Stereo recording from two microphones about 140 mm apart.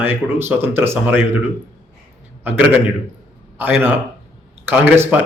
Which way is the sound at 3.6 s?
15° right (ahead or behind).